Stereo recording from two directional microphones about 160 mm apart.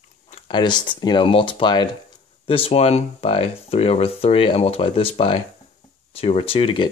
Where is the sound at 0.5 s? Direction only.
30° left (ahead or behind).